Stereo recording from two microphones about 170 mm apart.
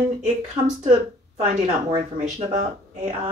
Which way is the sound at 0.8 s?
45° right (ahead or behind).